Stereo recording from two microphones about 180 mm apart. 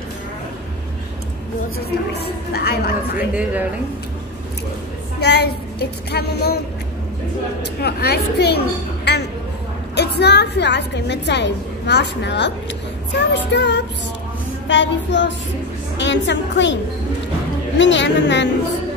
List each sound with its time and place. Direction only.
2.1 s child singing: 60° left (ahead or behind)
3.2 s speech: 10° right (ahead or behind)
5.2 s child singing: 65° left (ahead or behind)
7.8 s a woman's voice: 65° left (ahead or behind)
14.7 s a woman's voice: 85° left
17.7 s a woman's voice: 85° left